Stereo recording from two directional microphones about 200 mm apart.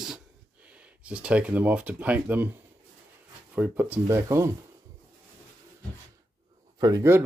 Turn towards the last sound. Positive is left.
turn(degrees=-15)  # may be behind; listen again after turning